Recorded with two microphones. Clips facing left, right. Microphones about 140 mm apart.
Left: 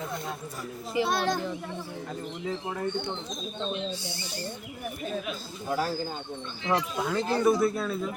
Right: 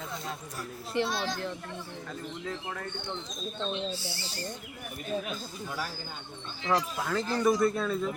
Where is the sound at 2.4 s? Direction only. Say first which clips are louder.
Left 6 dB; 15° left (ahead or behind).